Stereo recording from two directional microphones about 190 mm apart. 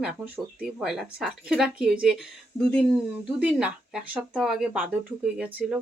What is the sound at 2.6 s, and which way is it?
Speech, 15° left (ahead or behind).